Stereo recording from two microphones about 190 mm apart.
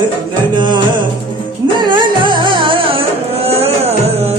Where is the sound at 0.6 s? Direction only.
25° right (ahead or behind).